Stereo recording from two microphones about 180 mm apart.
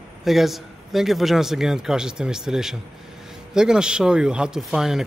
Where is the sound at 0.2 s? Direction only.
Centre (ahead or behind).